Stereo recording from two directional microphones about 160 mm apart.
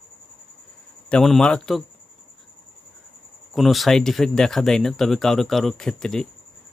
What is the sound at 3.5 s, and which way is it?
Speech, centre (ahead or behind).